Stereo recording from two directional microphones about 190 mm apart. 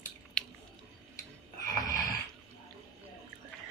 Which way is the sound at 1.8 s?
20° left (ahead or behind).